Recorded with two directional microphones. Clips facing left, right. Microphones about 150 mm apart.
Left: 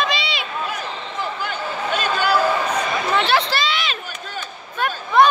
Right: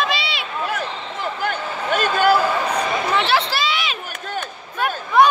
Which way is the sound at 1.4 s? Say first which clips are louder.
Right 1 dB; 50° right (ahead or behind).